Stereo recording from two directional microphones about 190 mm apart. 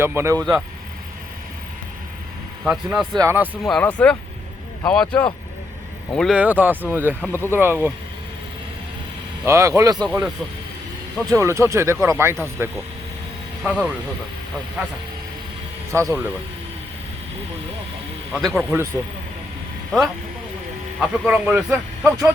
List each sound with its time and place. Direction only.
0.0 s speech: 15° right (ahead or behind)
0.3 s speech: centre (ahead or behind)
2.6 s speech: centre (ahead or behind)
3.2 s speech: 10° right (ahead or behind)
3.6 s speech: 5° left (ahead or behind)
7.2 s speech: 10° left (ahead or behind)
7.5 s speech: 10° right (ahead or behind)
9.5 s speech: 15° right (ahead or behind)
10.1 s speech: 5° right (ahead or behind)
16.0 s speech: 15° right (ahead or behind)
18.3 s speech: centre (ahead or behind)
21.0 s speech: 10° right (ahead or behind)